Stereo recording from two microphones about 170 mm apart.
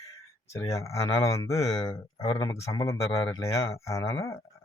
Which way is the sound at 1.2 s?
20° left (ahead or behind).